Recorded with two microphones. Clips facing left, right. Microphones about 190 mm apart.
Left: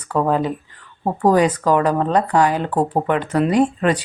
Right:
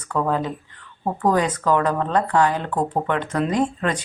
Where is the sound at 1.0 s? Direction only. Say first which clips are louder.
Left 4 dB; 35° left (ahead or behind).